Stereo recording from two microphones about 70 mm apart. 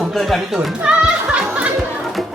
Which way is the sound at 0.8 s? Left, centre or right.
Centre.